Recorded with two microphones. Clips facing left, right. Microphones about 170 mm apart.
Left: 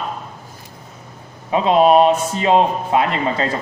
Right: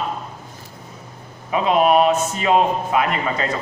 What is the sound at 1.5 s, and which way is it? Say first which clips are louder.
A man's voice: left 3 dB; 30° left (ahead or behind).